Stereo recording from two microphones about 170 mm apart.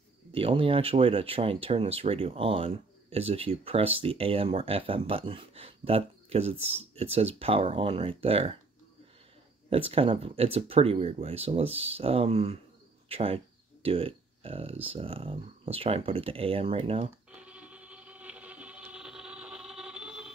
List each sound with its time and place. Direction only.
0.3 s speech: 30° right (ahead or behind)
9.7 s speech: 35° right (ahead or behind)
17.3 s a sound: 5° right (ahead or behind)